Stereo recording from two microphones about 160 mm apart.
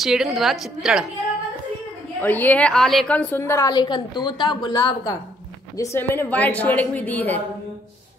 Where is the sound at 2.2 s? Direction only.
10° left (ahead or behind).